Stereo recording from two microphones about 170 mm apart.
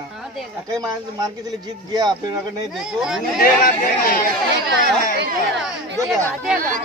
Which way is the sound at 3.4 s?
55° left (ahead or behind).